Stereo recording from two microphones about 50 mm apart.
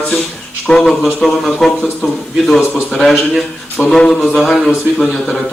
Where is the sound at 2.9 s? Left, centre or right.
Centre.